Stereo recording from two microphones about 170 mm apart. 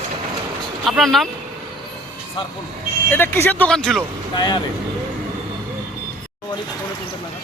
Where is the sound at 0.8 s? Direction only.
Centre (ahead or behind).